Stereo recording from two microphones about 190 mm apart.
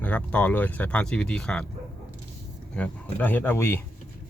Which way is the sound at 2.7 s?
10° left (ahead or behind).